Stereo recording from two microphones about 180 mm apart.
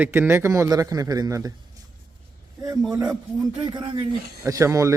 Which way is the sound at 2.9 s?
20° right (ahead or behind).